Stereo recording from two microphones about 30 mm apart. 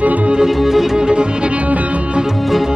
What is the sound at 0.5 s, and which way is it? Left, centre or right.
Music, centre.